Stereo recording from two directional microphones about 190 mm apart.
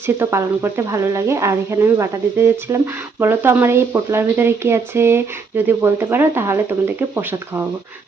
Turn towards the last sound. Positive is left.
turn(degrees=-15)  # may be behind; listen again after turning